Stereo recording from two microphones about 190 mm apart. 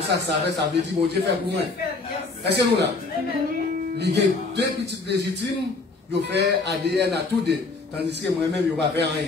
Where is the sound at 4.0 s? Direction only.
60° right (ahead or behind).